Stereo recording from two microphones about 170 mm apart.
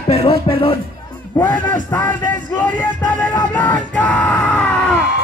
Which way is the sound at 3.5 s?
10° left (ahead or behind).